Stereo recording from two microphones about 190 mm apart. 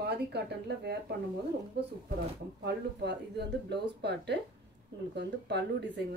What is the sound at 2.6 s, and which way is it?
Speech, 60° right (ahead or behind).